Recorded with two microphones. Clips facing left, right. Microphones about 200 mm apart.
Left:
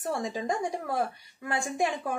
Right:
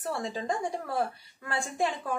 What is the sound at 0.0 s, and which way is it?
A woman's voice, 15° left (ahead or behind).